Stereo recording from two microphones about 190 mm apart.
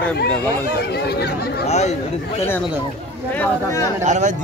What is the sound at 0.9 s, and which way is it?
Speech, 60° left (ahead or behind).